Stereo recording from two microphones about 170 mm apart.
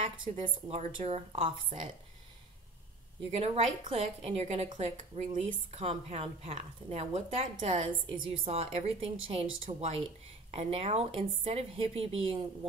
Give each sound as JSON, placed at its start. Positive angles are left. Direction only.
{"t": 0.4, "sound": "a woman's voice", "side_deg": -35}
{"t": 3.3, "sound": "a woman's voice", "side_deg": -40}